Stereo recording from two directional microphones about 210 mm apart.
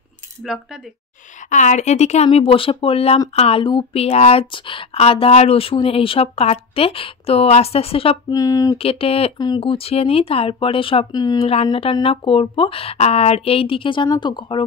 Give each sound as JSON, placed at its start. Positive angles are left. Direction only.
{"t": 1.5, "sound": "speech", "side_deg": 35}